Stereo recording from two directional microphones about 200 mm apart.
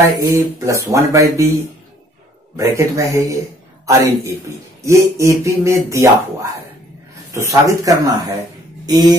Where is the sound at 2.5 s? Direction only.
15° right (ahead or behind).